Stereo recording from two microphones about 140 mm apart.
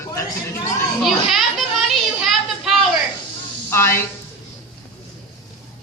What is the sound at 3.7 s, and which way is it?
Speech, 15° left (ahead or behind).